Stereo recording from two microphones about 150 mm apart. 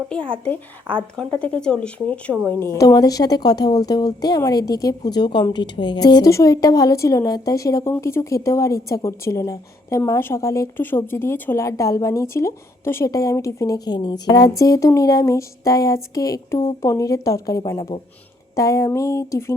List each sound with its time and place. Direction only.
0.3 s speech: 10° left (ahead or behind)
2.3 s a woman's voice: 15° right (ahead or behind)
2.6 s a woman's voice: 25° left (ahead or behind)